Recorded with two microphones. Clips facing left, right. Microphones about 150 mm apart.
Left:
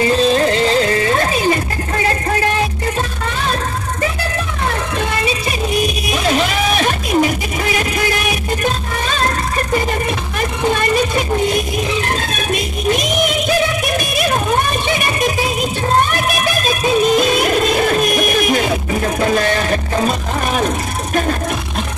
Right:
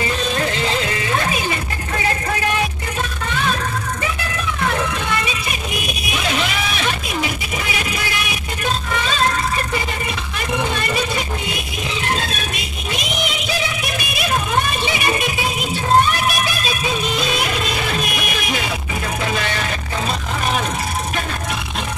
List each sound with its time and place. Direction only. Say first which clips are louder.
0.1 s music: left 8 dB; 35° left (ahead or behind)
6.1 s music: left 5 dB; 40° left (ahead or behind)
12.2 s music: left 6 dB; 45° left (ahead or behind)